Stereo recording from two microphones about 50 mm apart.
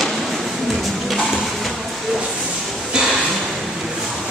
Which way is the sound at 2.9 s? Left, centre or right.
Centre.